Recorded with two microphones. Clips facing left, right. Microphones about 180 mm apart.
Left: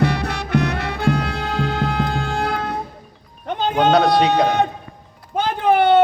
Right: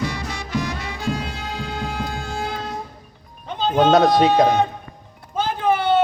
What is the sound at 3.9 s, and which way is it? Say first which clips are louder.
Speech: right 1 dB; 40° right (ahead or behind).